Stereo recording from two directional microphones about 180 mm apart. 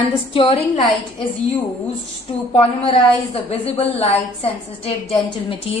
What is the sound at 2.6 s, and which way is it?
A woman's voice, 35° left (ahead or behind).